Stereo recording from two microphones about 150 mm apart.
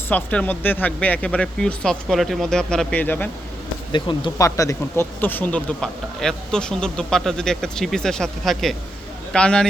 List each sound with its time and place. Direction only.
0.1 s speech: 10° left (ahead or behind)
3.9 s speech: 30° left (ahead or behind)
4.4 s speech: 20° left (ahead or behind)